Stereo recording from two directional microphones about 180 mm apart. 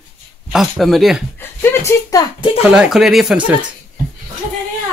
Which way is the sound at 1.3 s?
10° left (ahead or behind).